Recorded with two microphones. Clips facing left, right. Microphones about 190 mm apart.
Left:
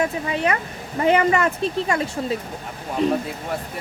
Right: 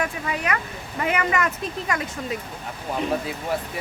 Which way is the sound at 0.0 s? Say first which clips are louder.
Left 5 dB; 30° left (ahead or behind).